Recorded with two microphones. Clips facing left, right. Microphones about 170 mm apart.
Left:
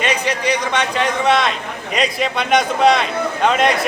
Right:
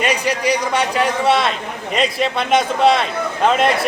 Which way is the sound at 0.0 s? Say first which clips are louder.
Right 1 dB; 10° right (ahead or behind).